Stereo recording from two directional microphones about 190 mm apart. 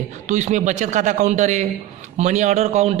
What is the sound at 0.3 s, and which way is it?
A man's voice, 40° right (ahead or behind).